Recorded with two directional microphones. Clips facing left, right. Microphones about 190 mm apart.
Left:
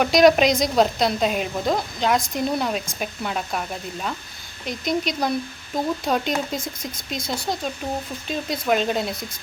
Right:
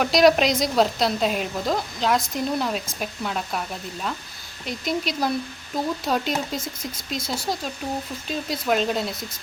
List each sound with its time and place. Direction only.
0.0 s a woman's voice: centre (ahead or behind)
4.6 s a woman's voice: 5° right (ahead or behind)